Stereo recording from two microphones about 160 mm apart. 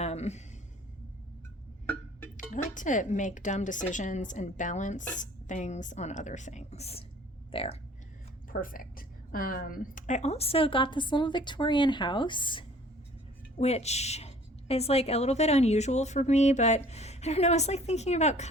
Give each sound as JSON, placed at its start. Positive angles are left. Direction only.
{"t": 0.0, "sound": "a sound", "side_deg": 40}
{"t": 2.5, "sound": "a woman's voice", "side_deg": 55}
{"t": 8.4, "sound": "a woman's voice", "side_deg": 60}
{"t": 13.6, "sound": "a woman's voice", "side_deg": 40}